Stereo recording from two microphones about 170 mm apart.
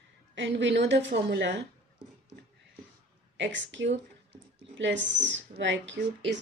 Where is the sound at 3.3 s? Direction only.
90° right.